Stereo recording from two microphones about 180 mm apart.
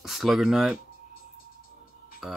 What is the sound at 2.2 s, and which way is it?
Speech, centre (ahead or behind).